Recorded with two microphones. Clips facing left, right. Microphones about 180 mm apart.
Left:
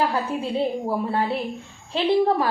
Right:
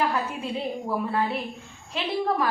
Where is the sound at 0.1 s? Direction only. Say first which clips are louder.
Left 4 dB; 30° left (ahead or behind).